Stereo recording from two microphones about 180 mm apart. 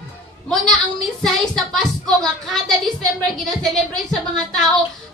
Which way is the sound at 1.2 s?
Centre (ahead or behind).